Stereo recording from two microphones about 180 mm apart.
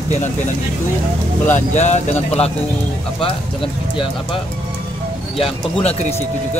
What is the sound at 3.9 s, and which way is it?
Speech, 30° left (ahead or behind).